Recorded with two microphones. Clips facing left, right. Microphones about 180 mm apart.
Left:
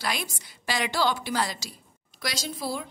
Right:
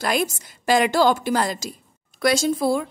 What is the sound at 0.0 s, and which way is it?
A woman's voice, 50° right (ahead or behind).